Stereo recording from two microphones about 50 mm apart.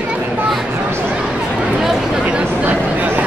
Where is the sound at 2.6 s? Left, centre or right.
Right.